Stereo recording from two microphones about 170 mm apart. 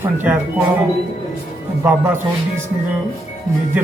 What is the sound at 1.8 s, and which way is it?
Speech, 10° right (ahead or behind).